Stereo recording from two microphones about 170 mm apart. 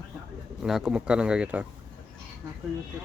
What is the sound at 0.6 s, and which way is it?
Speech, 5° right (ahead or behind).